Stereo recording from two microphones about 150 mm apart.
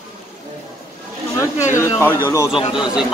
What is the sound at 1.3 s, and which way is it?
Speech, 20° left (ahead or behind).